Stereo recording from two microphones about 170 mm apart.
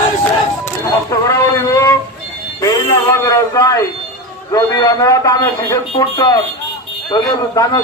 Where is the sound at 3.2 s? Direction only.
20° left (ahead or behind).